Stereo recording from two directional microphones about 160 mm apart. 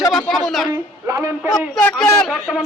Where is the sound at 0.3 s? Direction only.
Centre (ahead or behind).